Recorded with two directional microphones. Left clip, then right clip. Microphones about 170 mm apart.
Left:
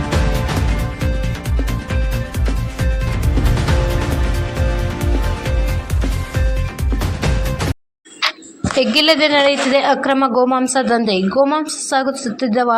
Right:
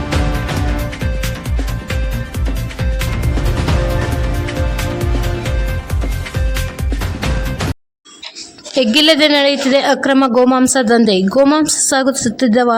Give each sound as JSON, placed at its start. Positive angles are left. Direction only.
{"t": 8.7, "sound": "a woman's voice", "side_deg": -35}